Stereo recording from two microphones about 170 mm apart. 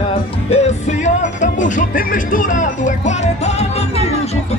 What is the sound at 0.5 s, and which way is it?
Music, 40° left (ahead or behind).